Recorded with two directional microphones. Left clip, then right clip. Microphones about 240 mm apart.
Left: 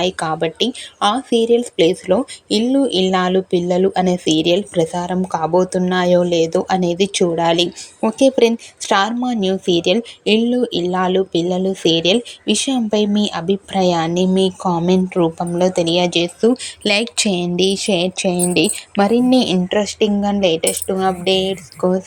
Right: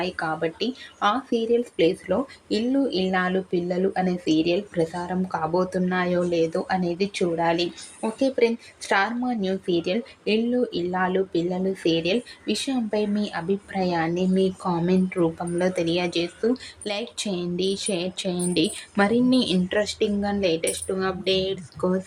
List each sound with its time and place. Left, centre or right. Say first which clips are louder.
0.0 s speech: left 8 dB; left